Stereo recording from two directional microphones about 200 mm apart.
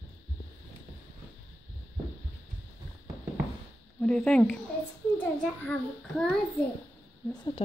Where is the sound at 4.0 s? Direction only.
5° left (ahead or behind).